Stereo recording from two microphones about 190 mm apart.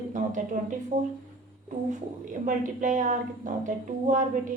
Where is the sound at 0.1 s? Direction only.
40° right (ahead or behind).